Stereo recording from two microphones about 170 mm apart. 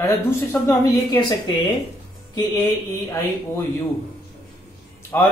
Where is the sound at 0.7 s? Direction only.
20° left (ahead or behind).